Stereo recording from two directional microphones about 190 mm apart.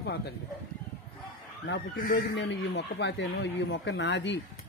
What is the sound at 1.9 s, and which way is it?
Speech, 45° left (ahead or behind).